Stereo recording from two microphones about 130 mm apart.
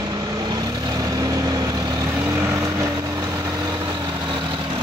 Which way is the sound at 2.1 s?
15° right (ahead or behind).